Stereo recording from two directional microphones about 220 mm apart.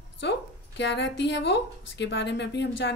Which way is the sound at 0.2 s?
50° left (ahead or behind).